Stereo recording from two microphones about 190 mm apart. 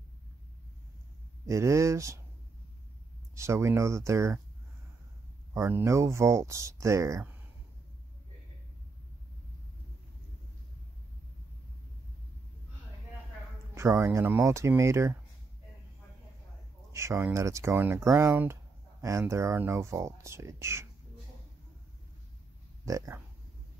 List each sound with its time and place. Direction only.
1.4 s speech: 15° right (ahead or behind)
3.3 s speech: 15° right (ahead or behind)
5.5 s speech: 10° right (ahead or behind)
13.7 s speech: 15° right (ahead or behind)
16.9 s speech: 15° right (ahead or behind)
22.8 s speech: 15° right (ahead or behind)